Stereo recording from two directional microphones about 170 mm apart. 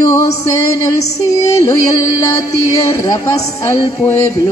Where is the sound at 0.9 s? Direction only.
40° left (ahead or behind).